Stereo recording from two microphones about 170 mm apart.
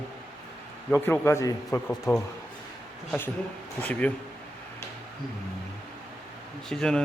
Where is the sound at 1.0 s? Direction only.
15° left (ahead or behind).